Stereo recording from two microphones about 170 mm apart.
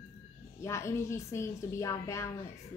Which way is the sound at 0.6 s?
15° left (ahead or behind).